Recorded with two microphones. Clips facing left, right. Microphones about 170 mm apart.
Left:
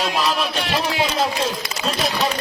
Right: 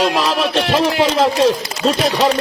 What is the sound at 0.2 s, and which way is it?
Music, 75° right (ahead or behind).